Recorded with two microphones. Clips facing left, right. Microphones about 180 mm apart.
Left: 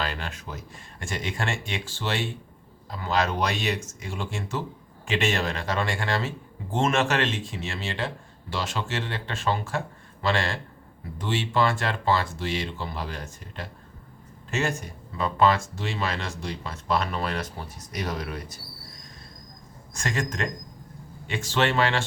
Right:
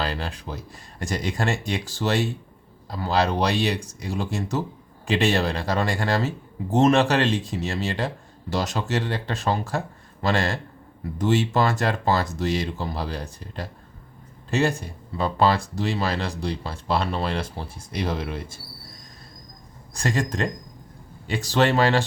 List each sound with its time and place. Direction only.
0.0 s speech: 35° right (ahead or behind)
19.9 s speech: 35° right (ahead or behind)